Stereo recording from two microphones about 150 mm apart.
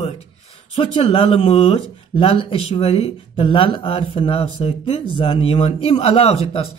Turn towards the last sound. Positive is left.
turn(degrees=40)  # may be behind; listen again after turning